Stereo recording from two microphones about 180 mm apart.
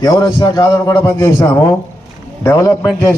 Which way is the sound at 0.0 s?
20° left (ahead or behind).